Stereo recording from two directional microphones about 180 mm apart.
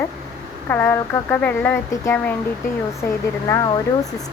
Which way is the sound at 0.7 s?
10° left (ahead or behind).